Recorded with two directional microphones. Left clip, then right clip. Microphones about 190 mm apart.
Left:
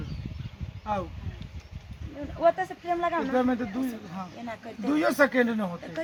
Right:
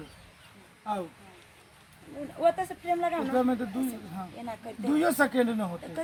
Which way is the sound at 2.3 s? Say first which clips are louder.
Left 2 dB; 5° left (ahead or behind).